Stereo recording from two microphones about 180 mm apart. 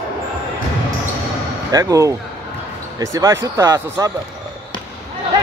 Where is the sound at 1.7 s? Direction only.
20° right (ahead or behind).